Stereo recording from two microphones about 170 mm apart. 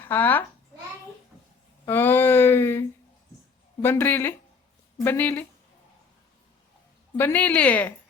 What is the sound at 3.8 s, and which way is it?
Speech, 10° left (ahead or behind).